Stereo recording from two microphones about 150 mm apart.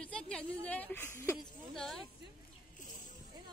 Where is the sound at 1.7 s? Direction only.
Centre (ahead or behind).